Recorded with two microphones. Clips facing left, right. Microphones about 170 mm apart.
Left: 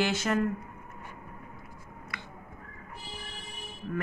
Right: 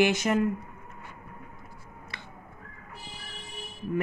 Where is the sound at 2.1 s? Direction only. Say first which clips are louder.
Left 2 dB; 30° right (ahead or behind).